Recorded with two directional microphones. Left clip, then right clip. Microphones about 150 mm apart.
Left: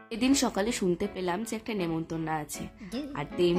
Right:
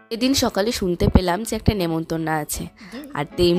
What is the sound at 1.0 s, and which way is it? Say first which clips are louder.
A woman's voice: right 11 dB; 55° right (ahead or behind).